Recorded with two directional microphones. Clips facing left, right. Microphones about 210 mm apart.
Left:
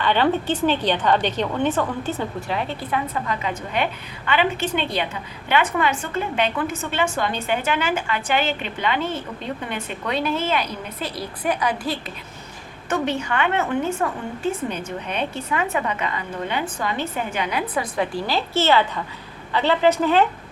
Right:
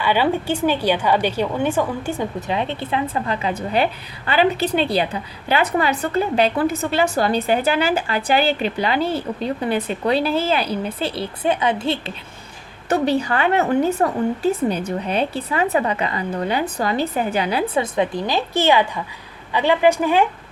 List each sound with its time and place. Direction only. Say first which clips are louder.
0.0 s a woman's voice: right 1 dB; 10° right (ahead or behind)